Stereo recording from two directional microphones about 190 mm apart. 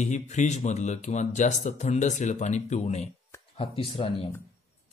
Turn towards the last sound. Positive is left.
turn(degrees=30)  # may be behind; listen again after turning